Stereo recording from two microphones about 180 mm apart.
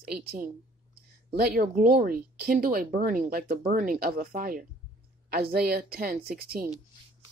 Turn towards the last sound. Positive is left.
turn(degrees=-60)  # may be behind; listen again after turning